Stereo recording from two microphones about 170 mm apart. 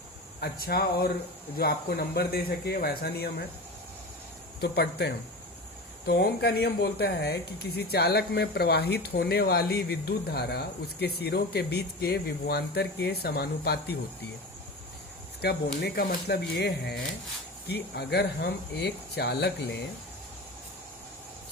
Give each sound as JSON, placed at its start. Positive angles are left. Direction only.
{"t": 0.3, "sound": "speech", "side_deg": 65}
{"t": 4.6, "sound": "speech", "side_deg": 75}
{"t": 15.4, "sound": "speech", "side_deg": 70}